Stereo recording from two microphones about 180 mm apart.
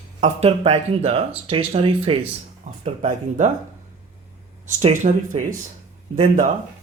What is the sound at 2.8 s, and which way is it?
Speech, 45° right (ahead or behind).